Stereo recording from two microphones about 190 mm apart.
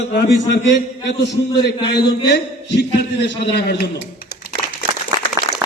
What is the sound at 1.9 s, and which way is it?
A man's voice, 65° left (ahead or behind).